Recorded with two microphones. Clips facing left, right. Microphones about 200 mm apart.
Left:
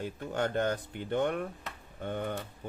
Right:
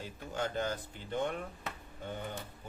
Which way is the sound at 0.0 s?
60° left (ahead or behind).